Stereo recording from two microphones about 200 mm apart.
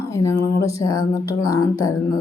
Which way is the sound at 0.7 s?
15° left (ahead or behind).